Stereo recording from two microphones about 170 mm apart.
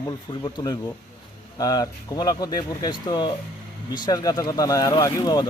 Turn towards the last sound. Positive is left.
turn(degrees=20)  # may be behind; listen again after turning